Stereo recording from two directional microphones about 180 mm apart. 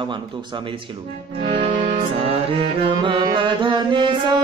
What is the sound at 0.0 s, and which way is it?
Speech, 25° right (ahead or behind).